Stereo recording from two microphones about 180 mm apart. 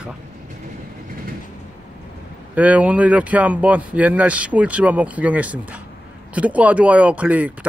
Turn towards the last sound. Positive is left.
turn(degrees=-10)  # may be behind; listen again after turning